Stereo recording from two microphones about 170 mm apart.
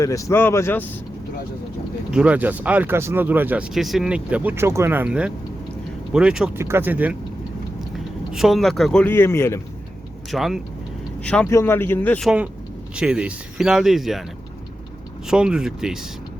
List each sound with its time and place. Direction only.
0.0 s speech: 20° left (ahead or behind)
2.1 s a man's voice: 10° right (ahead or behind)
8.3 s a man's voice: centre (ahead or behind); by 9.6 s 15° left (ahead or behind)
10.3 s a man's voice: centre (ahead or behind)
13.0 s a man's voice: 5° right (ahead or behind)
15.3 s a man's voice: 5° right (ahead or behind)